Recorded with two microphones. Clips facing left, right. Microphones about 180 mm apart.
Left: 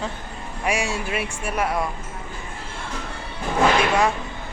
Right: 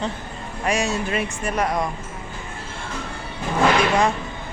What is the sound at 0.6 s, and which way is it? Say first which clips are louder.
Speech: right 2 dB; 10° left (ahead or behind).